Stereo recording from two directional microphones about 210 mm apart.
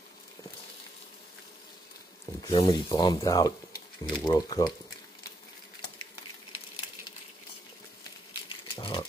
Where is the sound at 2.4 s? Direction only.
20° left (ahead or behind).